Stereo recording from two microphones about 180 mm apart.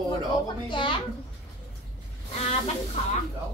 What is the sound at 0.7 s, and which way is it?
Speech, 25° left (ahead or behind).